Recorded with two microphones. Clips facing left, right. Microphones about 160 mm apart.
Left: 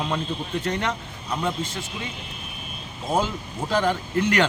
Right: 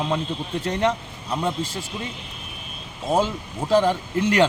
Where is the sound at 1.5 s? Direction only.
35° right (ahead or behind).